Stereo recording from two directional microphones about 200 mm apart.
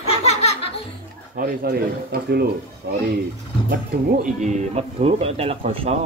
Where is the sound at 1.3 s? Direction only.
50° right (ahead or behind).